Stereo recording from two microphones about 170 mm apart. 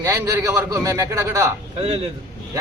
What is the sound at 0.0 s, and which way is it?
A man's voice, 15° right (ahead or behind).